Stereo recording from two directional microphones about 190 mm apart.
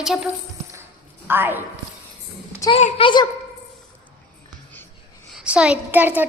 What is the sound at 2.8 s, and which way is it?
Speech, 35° left (ahead or behind).